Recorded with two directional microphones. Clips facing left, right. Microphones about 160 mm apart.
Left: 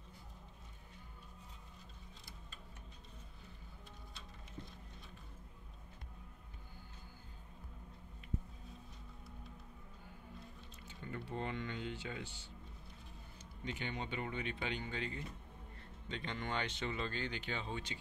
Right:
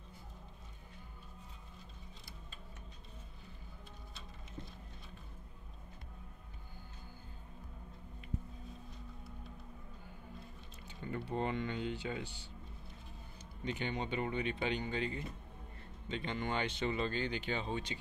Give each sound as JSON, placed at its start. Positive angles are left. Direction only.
{"t": 10.9, "sound": "a sound", "side_deg": -20}
{"t": 11.2, "sound": "speech", "side_deg": -20}
{"t": 13.7, "sound": "speech", "side_deg": -25}